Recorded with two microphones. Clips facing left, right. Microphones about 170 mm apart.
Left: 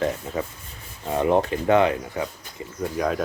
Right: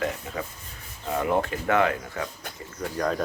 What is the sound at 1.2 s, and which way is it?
Speech, 25° left (ahead or behind).